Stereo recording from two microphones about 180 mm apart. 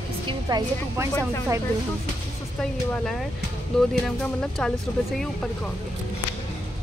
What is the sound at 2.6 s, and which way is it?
Speech, 5° left (ahead or behind).